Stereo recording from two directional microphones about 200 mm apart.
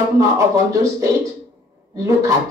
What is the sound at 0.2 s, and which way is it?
A woman's voice, 15° right (ahead or behind).